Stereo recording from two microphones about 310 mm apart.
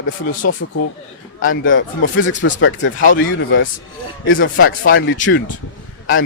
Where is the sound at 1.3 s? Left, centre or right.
Left.